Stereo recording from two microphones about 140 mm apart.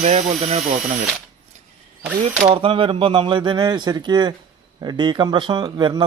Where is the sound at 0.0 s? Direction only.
50° right (ahead or behind).